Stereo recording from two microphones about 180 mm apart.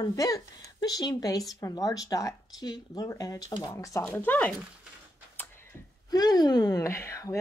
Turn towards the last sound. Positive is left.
turn(degrees=15)  # may be behind; listen again after turning